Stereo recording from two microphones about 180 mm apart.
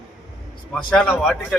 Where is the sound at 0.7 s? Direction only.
5° left (ahead or behind).